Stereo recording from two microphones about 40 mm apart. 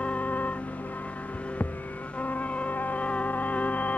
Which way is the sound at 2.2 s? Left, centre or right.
Left.